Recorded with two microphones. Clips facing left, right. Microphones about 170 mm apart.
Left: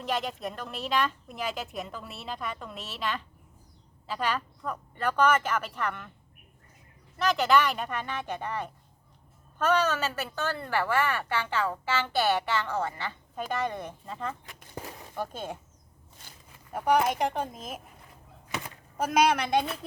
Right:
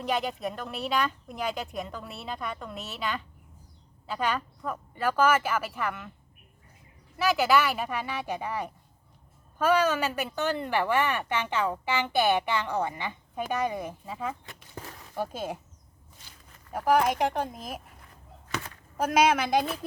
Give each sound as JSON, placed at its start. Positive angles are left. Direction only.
{"t": 0.0, "sound": "speech", "side_deg": 0}
{"t": 7.2, "sound": "a woman's voice", "side_deg": -5}
{"t": 16.7, "sound": "speech", "side_deg": 0}
{"t": 18.4, "sound": "a sound", "side_deg": 15}
{"t": 18.9, "sound": "speech", "side_deg": 0}